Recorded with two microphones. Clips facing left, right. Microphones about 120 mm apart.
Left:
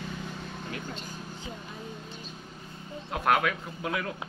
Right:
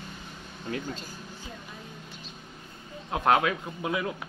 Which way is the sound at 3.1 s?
25° right (ahead or behind).